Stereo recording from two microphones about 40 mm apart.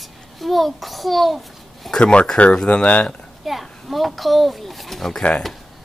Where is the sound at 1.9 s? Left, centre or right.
Centre.